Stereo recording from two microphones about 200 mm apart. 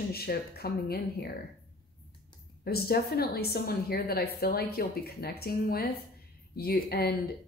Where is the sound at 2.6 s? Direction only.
50° left (ahead or behind).